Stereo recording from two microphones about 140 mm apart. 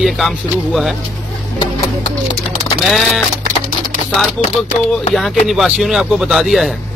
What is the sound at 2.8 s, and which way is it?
Speech, centre (ahead or behind).